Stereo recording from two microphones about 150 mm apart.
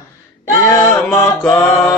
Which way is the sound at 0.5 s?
20° left (ahead or behind).